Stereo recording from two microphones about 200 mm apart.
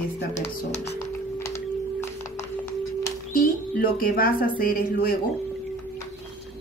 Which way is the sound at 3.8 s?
45° left (ahead or behind).